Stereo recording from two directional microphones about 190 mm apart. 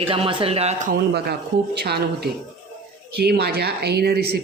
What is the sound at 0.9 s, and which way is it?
Speech, 55° right (ahead or behind).